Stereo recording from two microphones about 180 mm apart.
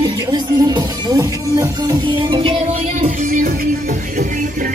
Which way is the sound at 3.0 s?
45° right (ahead or behind).